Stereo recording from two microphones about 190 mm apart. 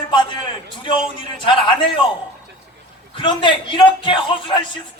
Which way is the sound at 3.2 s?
25° left (ahead or behind).